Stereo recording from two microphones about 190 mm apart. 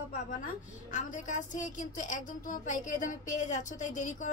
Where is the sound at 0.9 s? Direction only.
40° left (ahead or behind).